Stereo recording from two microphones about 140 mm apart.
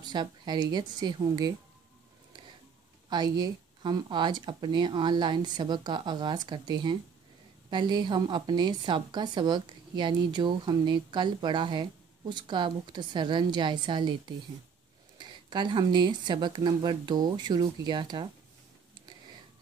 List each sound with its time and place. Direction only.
0.0 s speech: 30° right (ahead or behind)
3.1 s a woman's voice: 30° right (ahead or behind)